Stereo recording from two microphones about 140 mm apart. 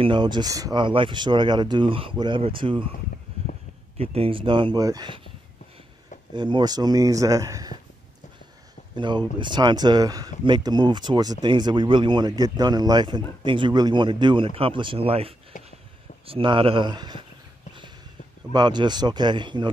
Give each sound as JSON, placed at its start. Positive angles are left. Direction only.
{"t": 0.0, "sound": "speech", "side_deg": -35}
{"t": 3.4, "sound": "a sound", "side_deg": -45}
{"t": 4.0, "sound": "speech", "side_deg": -45}
{"t": 6.3, "sound": "speech", "side_deg": -35}
{"t": 8.9, "sound": "speech", "side_deg": -35}
{"t": 15.5, "sound": "a sound", "side_deg": 65}
{"t": 16.3, "sound": "speech", "side_deg": -40}
{"t": 18.5, "sound": "speech", "side_deg": -30}